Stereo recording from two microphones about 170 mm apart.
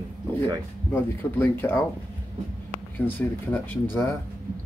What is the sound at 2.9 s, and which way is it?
Speech, 10° left (ahead or behind).